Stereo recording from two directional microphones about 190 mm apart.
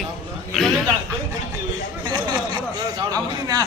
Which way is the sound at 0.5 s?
Centre (ahead or behind).